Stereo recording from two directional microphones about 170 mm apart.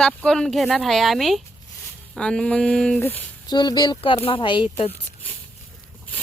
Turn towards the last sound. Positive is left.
turn(degrees=10)  # may be behind; listen again after turning